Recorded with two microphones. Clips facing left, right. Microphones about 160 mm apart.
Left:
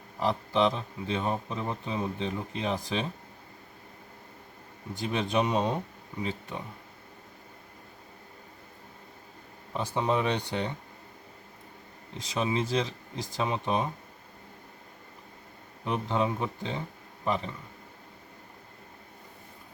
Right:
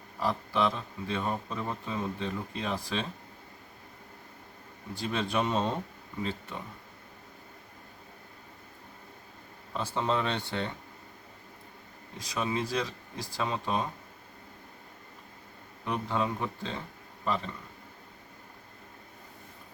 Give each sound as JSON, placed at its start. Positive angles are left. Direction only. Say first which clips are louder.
{"t": 0.2, "sound": "speech", "louder": "left 3 dB", "side_deg": 20}
{"t": 4.9, "sound": "speech", "louder": "left 2 dB", "side_deg": 20}
{"t": 9.7, "sound": "speech", "louder": "left 2 dB", "side_deg": 15}
{"t": 12.1, "sound": "speech", "louder": "left 3 dB", "side_deg": 25}
{"t": 15.8, "sound": "speech", "louder": "left 2 dB", "side_deg": 20}